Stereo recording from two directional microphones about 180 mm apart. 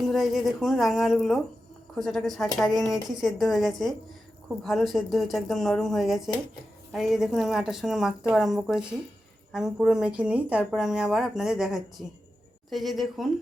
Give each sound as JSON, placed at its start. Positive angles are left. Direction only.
{"t": 0.1, "sound": "speech", "side_deg": 0}